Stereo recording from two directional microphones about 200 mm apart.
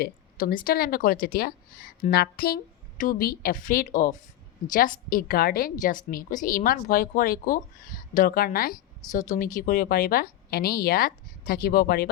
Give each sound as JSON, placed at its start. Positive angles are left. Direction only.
{"t": 0.0, "sound": "a woman's voice", "side_deg": 45}